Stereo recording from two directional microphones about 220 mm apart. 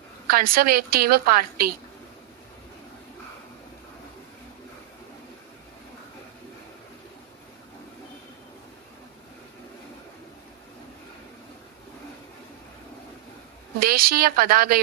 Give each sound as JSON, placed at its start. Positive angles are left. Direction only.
{"t": 0.3, "sound": "a woman's voice", "side_deg": -40}
{"t": 13.7, "sound": "a woman's voice", "side_deg": -40}